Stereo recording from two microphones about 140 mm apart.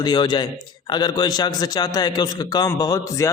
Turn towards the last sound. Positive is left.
turn(degrees=25)  # may be behind; listen again after turning